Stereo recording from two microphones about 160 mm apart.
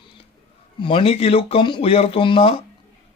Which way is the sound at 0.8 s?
35° left (ahead or behind).